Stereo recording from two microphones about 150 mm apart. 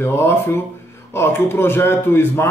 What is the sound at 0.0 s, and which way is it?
A man's voice, 15° left (ahead or behind).